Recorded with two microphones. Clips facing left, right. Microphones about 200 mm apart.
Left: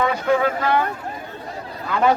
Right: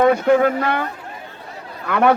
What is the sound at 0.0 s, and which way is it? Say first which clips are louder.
Speech: right 5 dB; 50° right (ahead or behind).